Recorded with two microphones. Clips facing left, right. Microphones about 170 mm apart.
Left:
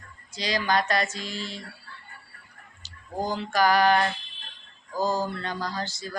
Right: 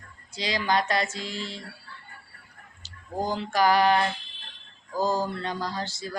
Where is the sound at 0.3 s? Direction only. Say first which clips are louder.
Even; 25° right (ahead or behind).